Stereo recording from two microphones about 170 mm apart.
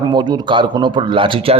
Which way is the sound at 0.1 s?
25° right (ahead or behind).